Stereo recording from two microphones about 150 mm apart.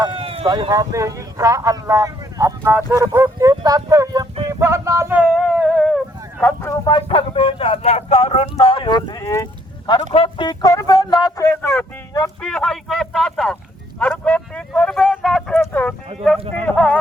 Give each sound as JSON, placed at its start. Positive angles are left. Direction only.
{"t": 0.0, "sound": "speech", "side_deg": -35}
{"t": 4.6, "sound": "a sound", "side_deg": -20}
{"t": 6.4, "sound": "speech", "side_deg": 20}
{"t": 6.9, "sound": "speech", "side_deg": 35}
{"t": 10.1, "sound": "speech", "side_deg": 35}
{"t": 12.4, "sound": "speech", "side_deg": 5}